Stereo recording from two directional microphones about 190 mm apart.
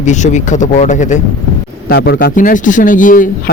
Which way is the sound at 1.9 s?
55° left (ahead or behind).